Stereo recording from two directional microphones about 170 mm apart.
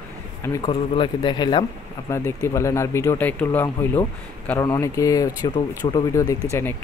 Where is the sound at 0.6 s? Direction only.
30° left (ahead or behind).